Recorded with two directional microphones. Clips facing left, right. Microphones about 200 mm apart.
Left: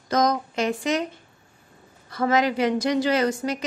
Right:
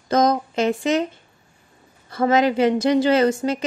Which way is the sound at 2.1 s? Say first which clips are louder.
Right 4 dB; 25° right (ahead or behind).